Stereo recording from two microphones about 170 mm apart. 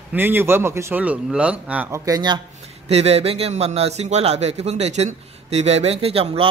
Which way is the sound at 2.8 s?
35° right (ahead or behind).